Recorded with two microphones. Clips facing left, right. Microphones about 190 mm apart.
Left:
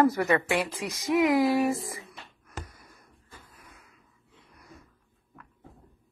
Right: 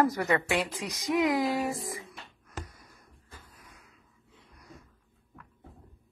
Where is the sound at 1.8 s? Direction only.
20° right (ahead or behind).